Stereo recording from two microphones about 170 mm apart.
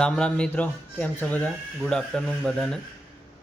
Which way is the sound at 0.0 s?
5° left (ahead or behind).